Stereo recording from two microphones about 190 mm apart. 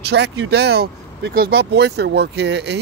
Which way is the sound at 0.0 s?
65° right (ahead or behind).